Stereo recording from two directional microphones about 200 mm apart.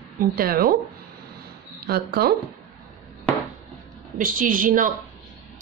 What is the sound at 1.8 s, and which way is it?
Speech, 50° right (ahead or behind).